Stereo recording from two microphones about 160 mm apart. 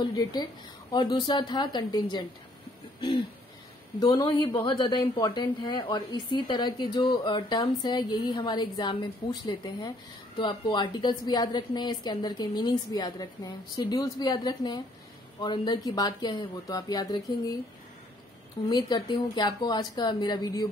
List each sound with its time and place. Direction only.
0.0 s a woman's voice: 25° left (ahead or behind)
3.0 s a sound: 30° left (ahead or behind)
4.0 s a woman's voice: 25° left (ahead or behind)
18.7 s a woman's voice: 25° left (ahead or behind)